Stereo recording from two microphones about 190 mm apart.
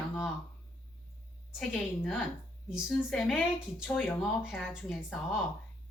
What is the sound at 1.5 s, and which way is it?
Speech, 5° left (ahead or behind).